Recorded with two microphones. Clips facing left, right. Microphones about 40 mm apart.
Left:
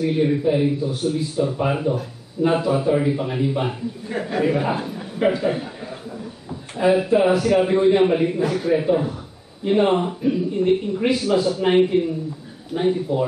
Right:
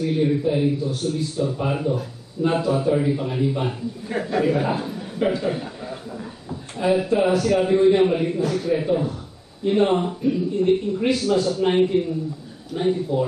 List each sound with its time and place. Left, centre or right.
0.0 s a man's voice: centre